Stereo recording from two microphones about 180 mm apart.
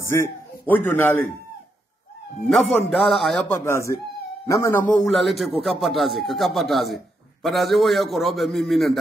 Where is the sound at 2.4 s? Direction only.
Centre (ahead or behind).